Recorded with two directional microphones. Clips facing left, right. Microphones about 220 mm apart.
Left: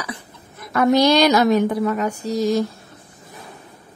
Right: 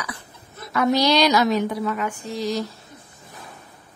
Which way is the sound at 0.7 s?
50° left (ahead or behind).